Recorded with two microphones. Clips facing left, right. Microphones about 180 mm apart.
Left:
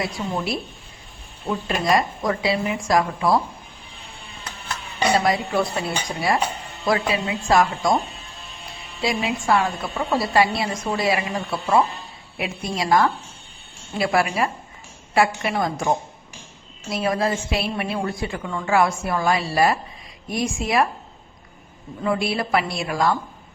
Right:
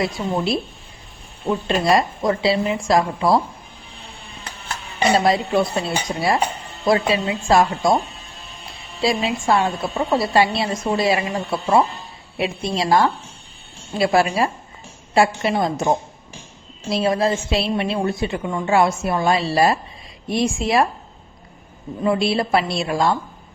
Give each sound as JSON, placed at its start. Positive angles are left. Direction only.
{"t": 0.0, "sound": "a woman's voice", "side_deg": -25}
{"t": 5.1, "sound": "a woman's voice", "side_deg": -25}
{"t": 9.0, "sound": "a woman's voice", "side_deg": -30}
{"t": 22.0, "sound": "a woman's voice", "side_deg": -25}